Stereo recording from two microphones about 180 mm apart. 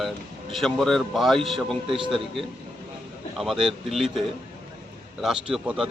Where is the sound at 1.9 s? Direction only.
30° right (ahead or behind).